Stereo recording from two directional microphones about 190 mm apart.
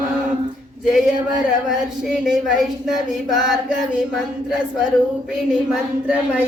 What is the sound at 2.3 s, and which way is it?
Speech, centre (ahead or behind).